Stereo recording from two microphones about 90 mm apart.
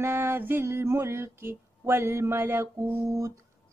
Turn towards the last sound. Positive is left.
turn(degrees=-30)  # may be behind; listen again after turning